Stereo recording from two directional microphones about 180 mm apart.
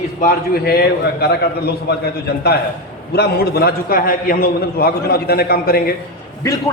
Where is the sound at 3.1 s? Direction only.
60° left (ahead or behind).